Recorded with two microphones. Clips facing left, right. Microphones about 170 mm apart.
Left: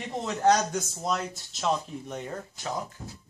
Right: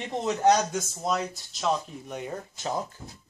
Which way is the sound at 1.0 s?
Centre (ahead or behind).